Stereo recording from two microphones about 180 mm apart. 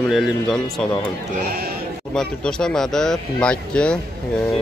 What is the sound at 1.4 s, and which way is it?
Speech, 60° right (ahead or behind).